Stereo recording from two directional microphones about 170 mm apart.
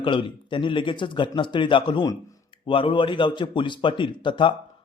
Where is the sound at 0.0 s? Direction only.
30° left (ahead or behind).